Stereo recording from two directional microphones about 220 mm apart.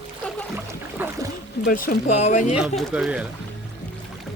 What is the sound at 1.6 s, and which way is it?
Speech, 40° left (ahead or behind).